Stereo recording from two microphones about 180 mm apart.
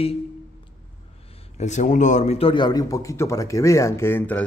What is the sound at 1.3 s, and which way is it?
A man's voice, 40° left (ahead or behind).